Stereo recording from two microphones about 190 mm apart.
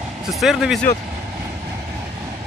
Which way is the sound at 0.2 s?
Centre (ahead or behind).